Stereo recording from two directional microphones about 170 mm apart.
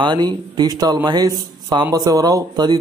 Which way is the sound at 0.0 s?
25° right (ahead or behind).